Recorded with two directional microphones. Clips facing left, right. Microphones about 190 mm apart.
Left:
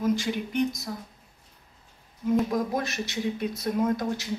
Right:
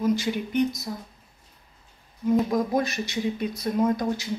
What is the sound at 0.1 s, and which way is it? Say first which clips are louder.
Speech: right 2 dB; centre (ahead or behind).